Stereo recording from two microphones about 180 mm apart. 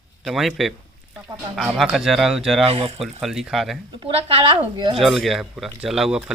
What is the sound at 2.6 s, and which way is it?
Speech, 30° right (ahead or behind).